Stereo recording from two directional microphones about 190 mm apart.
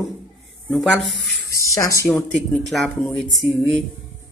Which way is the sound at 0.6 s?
Centre (ahead or behind).